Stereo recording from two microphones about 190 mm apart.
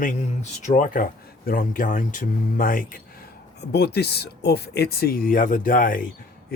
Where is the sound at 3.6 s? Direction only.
60° left (ahead or behind).